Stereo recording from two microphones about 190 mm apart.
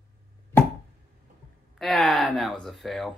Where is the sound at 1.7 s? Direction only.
Centre (ahead or behind).